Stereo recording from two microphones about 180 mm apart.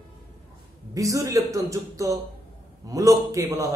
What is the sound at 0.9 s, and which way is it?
A man's voice, 20° right (ahead or behind).